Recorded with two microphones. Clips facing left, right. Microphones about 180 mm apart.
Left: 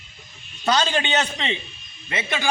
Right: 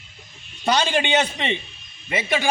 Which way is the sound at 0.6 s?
10° right (ahead or behind).